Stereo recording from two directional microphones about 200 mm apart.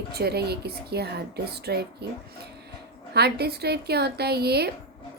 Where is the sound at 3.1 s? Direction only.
55° right (ahead or behind).